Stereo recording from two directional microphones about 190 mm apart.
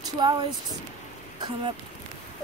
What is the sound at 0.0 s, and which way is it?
Speech, 20° right (ahead or behind).